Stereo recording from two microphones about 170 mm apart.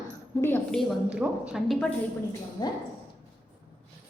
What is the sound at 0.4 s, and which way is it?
Speech, 10° left (ahead or behind).